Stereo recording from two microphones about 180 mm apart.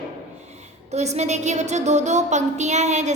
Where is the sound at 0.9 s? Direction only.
40° right (ahead or behind).